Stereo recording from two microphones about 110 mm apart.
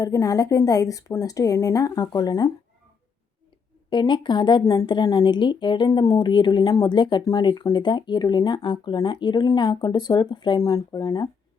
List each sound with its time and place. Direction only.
0.0 s a woman's voice: 35° left (ahead or behind)
3.8 s speech: 45° left (ahead or behind)
10.6 s a woman's voice: 30° left (ahead or behind)